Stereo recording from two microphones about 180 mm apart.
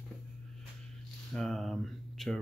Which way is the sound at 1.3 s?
Centre (ahead or behind).